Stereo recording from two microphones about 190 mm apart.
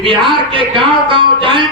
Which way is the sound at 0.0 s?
25° right (ahead or behind).